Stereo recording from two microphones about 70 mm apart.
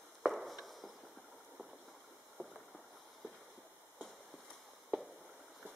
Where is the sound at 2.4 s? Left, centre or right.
Right.